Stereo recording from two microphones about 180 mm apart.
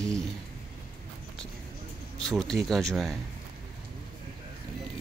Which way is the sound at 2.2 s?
5° left (ahead or behind).